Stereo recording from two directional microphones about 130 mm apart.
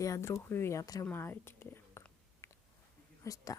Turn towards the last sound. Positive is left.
turn(degrees=25)  # may be behind; listen again after turning